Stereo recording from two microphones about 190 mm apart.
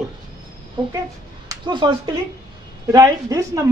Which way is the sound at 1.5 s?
25° right (ahead or behind).